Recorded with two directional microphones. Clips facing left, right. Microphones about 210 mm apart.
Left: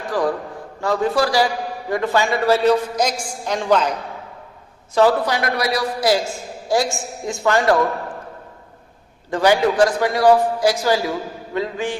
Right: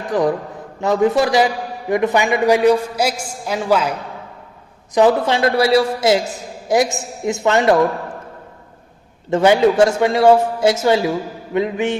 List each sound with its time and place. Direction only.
0.1 s a man's voice: 20° right (ahead or behind)
4.9 s a man's voice: 20° right (ahead or behind)
9.3 s a man's voice: 25° right (ahead or behind)